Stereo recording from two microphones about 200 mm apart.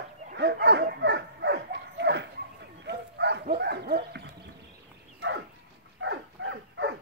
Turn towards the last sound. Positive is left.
turn(degrees=-60)  # may be behind; listen again after turning